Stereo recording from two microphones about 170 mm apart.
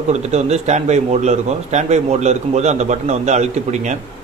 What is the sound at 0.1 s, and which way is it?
A man's voice, 40° right (ahead or behind).